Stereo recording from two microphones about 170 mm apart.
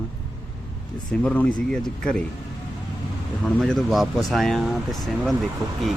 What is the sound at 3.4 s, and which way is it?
Speech, centre (ahead or behind).